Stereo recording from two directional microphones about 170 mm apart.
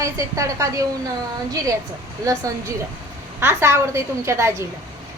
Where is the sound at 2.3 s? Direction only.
20° right (ahead or behind).